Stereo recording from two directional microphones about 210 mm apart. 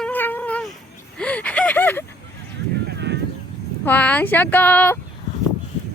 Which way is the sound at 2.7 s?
55° right (ahead or behind).